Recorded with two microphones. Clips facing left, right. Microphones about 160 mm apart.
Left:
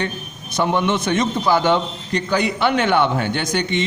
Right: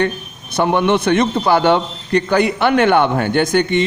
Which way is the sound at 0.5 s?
55° right (ahead or behind).